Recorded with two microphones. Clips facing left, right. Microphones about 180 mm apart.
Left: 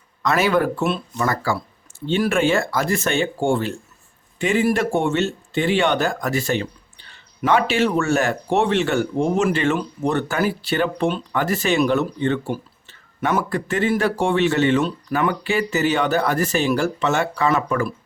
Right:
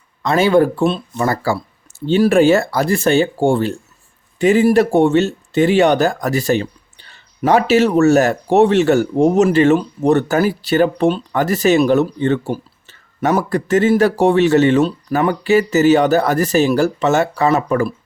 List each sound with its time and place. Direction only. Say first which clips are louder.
0.2 s speech: right 6 dB; 30° right (ahead or behind)